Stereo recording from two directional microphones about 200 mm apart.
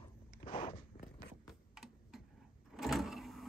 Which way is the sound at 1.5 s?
Centre (ahead or behind).